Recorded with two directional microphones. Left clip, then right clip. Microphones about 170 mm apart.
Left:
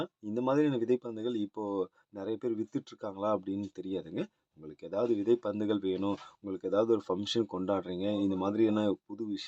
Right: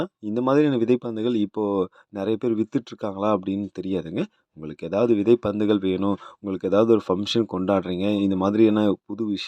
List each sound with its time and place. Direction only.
0.0 s speech: 35° right (ahead or behind)